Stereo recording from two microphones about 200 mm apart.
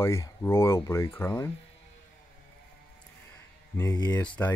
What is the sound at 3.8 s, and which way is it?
Speech, 20° left (ahead or behind).